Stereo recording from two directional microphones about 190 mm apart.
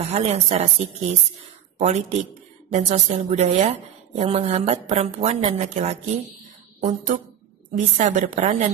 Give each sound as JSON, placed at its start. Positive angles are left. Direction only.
{"t": 0.0, "sound": "a woman's voice", "side_deg": -35}
{"t": 1.8, "sound": "a woman's voice", "side_deg": -35}